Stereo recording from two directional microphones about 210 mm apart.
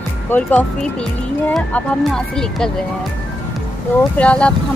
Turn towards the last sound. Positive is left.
turn(degrees=5)  # may be behind; listen again after turning